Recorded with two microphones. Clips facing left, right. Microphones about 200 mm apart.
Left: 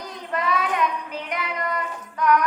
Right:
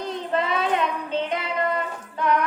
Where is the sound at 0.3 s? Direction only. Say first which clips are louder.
Even; 25° right (ahead or behind).